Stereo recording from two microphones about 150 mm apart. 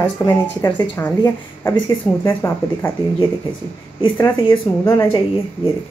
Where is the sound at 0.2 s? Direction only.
30° left (ahead or behind).